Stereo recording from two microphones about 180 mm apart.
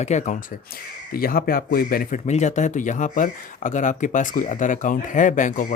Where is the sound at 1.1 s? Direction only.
55° left (ahead or behind).